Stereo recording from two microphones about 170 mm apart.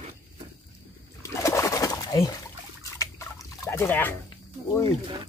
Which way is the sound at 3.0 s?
15° left (ahead or behind).